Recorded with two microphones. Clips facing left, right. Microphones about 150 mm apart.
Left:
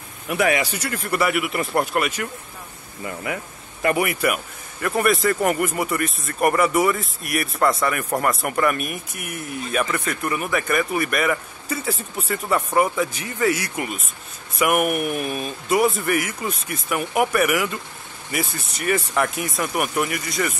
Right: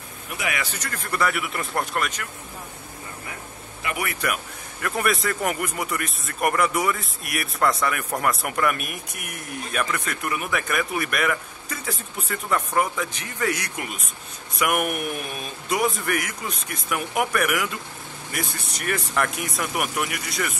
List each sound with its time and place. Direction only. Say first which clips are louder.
0.6 s speech: left 6 dB; 10° left (ahead or behind)
3.3 s speech: left 12 dB; 90° left
3.9 s a man's voice: left 6 dB; 20° left (ahead or behind)
4.8 s speech: left 5 dB; centre (ahead or behind)